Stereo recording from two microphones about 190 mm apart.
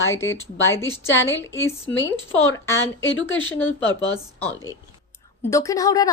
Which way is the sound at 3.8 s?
20° right (ahead or behind).